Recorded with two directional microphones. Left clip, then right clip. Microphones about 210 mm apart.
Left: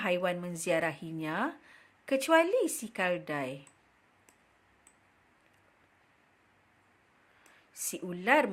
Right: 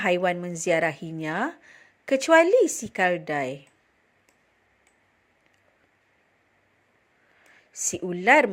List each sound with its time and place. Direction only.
0.0 s a woman's voice: 25° right (ahead or behind)
7.5 s speech: 25° right (ahead or behind)